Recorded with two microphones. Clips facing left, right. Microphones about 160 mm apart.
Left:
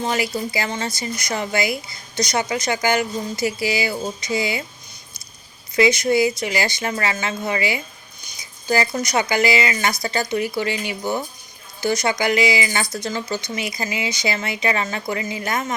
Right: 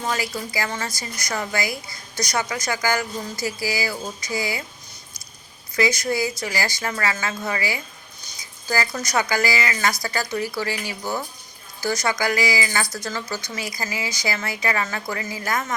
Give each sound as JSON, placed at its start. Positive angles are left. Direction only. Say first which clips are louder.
{"t": 0.0, "sound": "a woman's voice", "louder": "left 4 dB", "side_deg": 25}
{"t": 5.7, "sound": "a woman's voice", "louder": "left 5 dB", "side_deg": 20}